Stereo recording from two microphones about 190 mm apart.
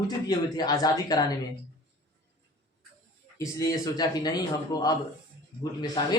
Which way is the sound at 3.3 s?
20° left (ahead or behind).